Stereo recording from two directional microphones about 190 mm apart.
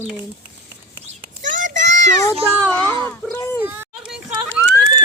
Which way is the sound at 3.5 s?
10° right (ahead or behind).